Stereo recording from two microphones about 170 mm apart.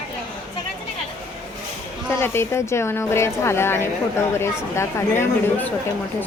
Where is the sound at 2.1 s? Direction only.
15° left (ahead or behind).